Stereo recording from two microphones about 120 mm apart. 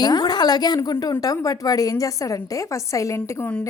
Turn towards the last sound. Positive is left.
turn(degrees=25)  # may be behind; listen again after turning